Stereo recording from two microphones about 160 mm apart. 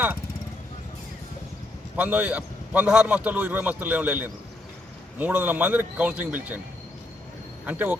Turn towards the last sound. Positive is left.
turn(degrees=-10)  # may be behind; listen again after turning